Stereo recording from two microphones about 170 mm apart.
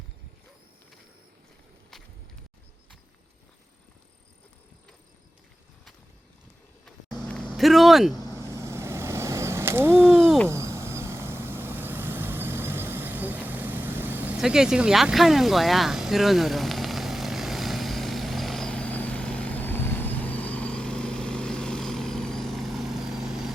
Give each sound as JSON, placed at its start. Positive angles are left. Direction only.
{"t": 7.3, "sound": "speech", "side_deg": 5}
{"t": 8.3, "sound": "vehicle", "side_deg": -15}